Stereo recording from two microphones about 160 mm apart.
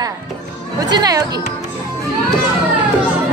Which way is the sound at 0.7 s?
25° right (ahead or behind).